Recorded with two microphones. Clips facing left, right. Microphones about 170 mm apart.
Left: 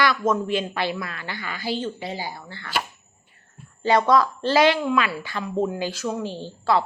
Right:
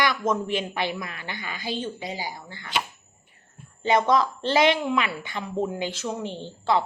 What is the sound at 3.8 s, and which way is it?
A woman's voice, 20° right (ahead or behind).